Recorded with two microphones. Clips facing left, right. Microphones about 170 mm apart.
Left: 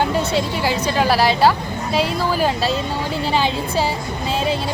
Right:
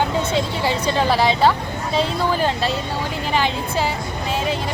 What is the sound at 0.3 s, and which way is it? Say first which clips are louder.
A woman's voice: left 1 dB; 25° right (ahead or behind).